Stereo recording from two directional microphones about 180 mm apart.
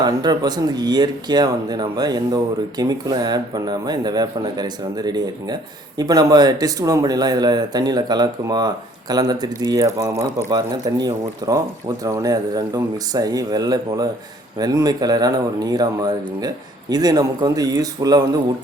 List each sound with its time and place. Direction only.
0.0 s speech: 20° right (ahead or behind)